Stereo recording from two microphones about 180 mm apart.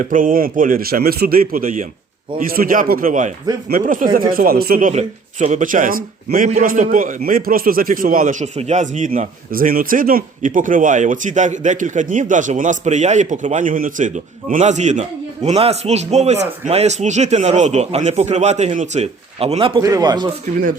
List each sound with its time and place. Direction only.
0.0 s a man's voice: 50° right (ahead or behind); by 20.2 s 20° right (ahead or behind)